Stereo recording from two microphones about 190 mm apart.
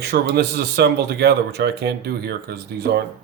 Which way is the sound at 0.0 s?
60° right (ahead or behind).